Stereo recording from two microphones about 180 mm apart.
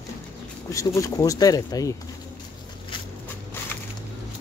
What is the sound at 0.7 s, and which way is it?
Speech, 20° left (ahead or behind).